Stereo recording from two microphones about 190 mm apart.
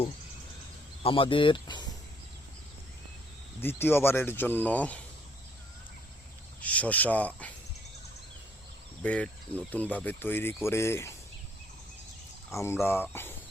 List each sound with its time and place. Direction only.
1.0 s speech: 30° left (ahead or behind)
3.6 s speech: 10° left (ahead or behind)
6.6 s speech: 5° left (ahead or behind)
9.0 s speech: 5° left (ahead or behind)
12.5 s speech: 15° left (ahead or behind)